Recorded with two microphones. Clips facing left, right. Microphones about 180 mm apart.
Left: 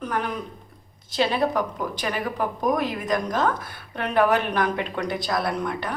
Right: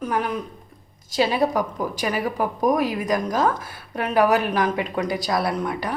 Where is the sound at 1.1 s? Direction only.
10° right (ahead or behind).